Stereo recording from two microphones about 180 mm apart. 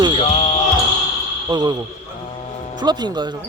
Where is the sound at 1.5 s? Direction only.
20° right (ahead or behind).